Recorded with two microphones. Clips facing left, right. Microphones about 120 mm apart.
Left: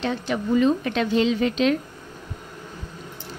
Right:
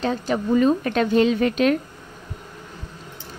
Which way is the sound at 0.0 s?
40° right (ahead or behind).